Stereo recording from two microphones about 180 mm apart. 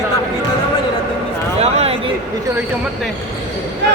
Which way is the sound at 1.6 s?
35° right (ahead or behind).